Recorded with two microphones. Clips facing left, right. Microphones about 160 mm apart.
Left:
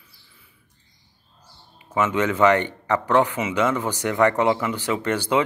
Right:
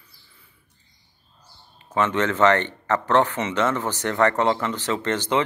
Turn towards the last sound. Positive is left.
turn(degrees=10)  # may be behind; listen again after turning